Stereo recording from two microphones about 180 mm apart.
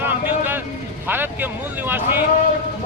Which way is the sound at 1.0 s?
10° right (ahead or behind).